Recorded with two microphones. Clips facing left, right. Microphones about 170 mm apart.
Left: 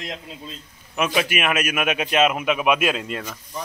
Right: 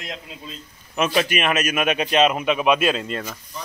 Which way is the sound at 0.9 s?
10° left (ahead or behind).